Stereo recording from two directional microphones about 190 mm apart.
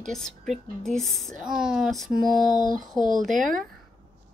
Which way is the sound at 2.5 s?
45° right (ahead or behind).